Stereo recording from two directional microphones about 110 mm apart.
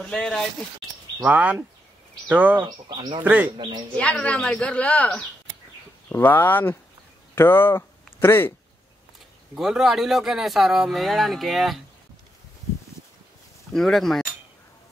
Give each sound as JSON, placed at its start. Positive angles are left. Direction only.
{"t": 0.0, "sound": "speech", "side_deg": 5}
{"t": 1.2, "sound": "speech", "side_deg": -15}
{"t": 2.6, "sound": "speech", "side_deg": -45}
{"t": 3.3, "sound": "speech", "side_deg": -15}
{"t": 3.5, "sound": "speech", "side_deg": -45}
{"t": 3.9, "sound": "speech", "side_deg": 10}
{"t": 9.6, "sound": "speech", "side_deg": -5}
{"t": 13.7, "sound": "speech", "side_deg": 5}